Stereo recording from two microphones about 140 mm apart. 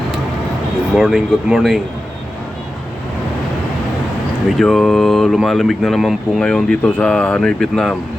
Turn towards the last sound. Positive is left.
turn(degrees=5)  # may be behind; listen again after turning